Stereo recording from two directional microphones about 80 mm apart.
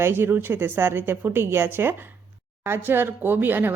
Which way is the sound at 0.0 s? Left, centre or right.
Right.